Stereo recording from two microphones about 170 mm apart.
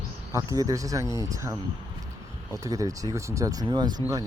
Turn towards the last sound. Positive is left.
turn(degrees=-20)  # may be behind; listen again after turning